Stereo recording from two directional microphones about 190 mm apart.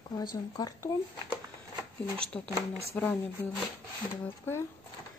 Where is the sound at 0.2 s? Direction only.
20° left (ahead or behind).